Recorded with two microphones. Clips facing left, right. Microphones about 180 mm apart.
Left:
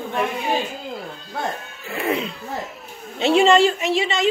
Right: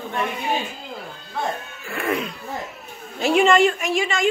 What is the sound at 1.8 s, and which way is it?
A woman's voice, 25° left (ahead or behind).